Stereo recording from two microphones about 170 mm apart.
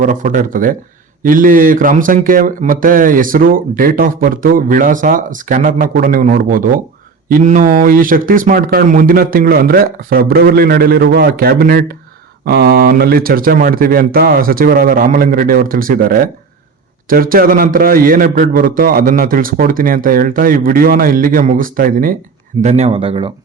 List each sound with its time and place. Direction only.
0.0 s a man's voice: 50° right (ahead or behind)
12.5 s a man's voice: 75° right (ahead or behind); by 22.1 s 55° right (ahead or behind)
22.6 s speech: 40° right (ahead or behind)